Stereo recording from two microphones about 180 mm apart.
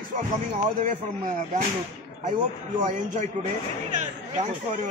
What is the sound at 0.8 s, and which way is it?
Speech, 45° right (ahead or behind).